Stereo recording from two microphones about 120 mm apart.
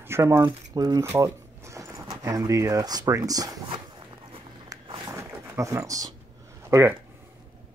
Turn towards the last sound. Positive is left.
turn(degrees=-25)  # may be behind; listen again after turning